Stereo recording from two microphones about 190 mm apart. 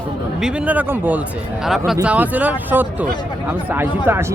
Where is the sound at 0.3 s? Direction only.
5° right (ahead or behind).